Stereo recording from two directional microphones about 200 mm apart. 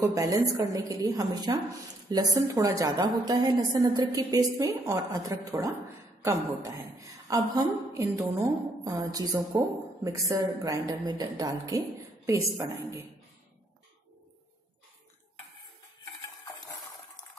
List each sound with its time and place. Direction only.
0.0 s a woman's voice: 15° right (ahead or behind)